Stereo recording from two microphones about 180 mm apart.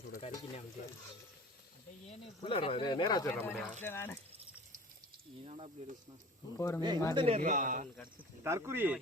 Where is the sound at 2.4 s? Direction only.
30° left (ahead or behind).